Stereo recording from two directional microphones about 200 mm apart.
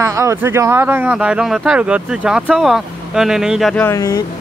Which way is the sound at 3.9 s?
15° left (ahead or behind).